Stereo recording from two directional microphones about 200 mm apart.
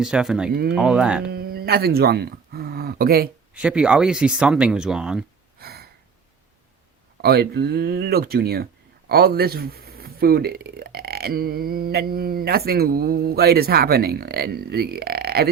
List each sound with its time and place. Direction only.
0.0 s speech: centre (ahead or behind)
0.5 s speech: 50° right (ahead or behind)
0.8 s speech: 5° right (ahead or behind)
1.3 s speech: 50° right (ahead or behind)
3.5 s speech: 5° right (ahead or behind)
5.5 s gasp: 50° right (ahead or behind)
7.2 s speech: 50° right (ahead or behind)